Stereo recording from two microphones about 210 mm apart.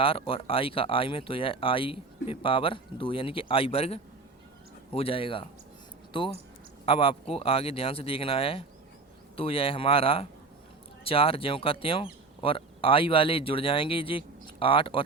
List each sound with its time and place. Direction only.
0.0 s speech: 25° left (ahead or behind)